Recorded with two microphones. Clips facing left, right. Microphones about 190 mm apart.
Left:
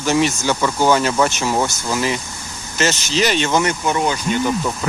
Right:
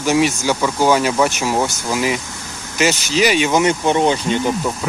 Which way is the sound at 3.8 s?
25° right (ahead or behind).